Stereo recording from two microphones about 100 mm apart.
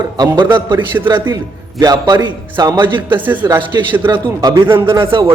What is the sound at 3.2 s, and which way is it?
Speech, 20° right (ahead or behind).